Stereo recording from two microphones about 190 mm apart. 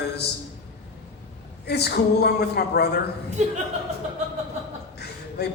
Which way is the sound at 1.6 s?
60° left (ahead or behind).